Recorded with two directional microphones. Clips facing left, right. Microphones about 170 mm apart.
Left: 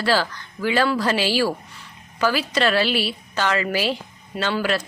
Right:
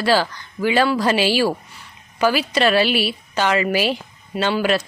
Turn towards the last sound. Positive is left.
turn(degrees=-15)  # may be behind; listen again after turning